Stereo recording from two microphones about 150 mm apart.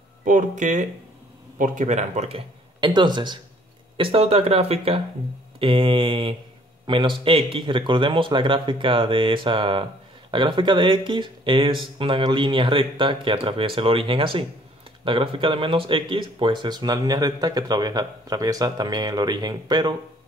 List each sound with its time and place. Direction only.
0.2 s speech: 60° right (ahead or behind); by 20.0 s 30° right (ahead or behind)